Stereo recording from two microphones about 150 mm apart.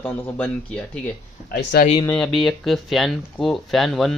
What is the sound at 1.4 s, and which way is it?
Speech, 75° left (ahead or behind).